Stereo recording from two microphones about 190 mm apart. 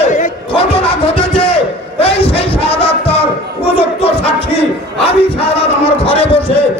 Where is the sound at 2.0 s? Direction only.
30° left (ahead or behind).